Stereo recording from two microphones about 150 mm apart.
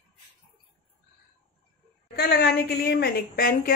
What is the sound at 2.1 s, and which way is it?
A woman's voice, 90° left.